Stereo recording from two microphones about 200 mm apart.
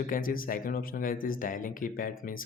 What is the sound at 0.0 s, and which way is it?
Speech, 45° left (ahead or behind).